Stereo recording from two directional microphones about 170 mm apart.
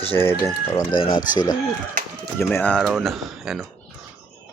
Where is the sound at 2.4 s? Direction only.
15° left (ahead or behind); by 3.7 s centre (ahead or behind).